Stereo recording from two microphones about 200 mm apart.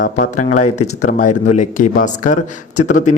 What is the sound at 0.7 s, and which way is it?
Speech, 90° left.